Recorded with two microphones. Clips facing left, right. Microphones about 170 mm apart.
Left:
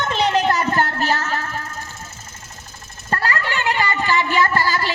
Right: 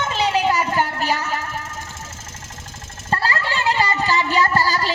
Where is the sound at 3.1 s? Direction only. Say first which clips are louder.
Even; 30° right (ahead or behind).